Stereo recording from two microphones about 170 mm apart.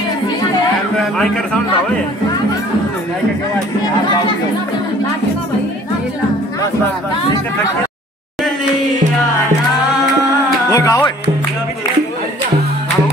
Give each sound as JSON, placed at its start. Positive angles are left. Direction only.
{"t": 0.9, "sound": "a man's voice", "side_deg": 5}
{"t": 10.7, "sound": "music", "side_deg": 20}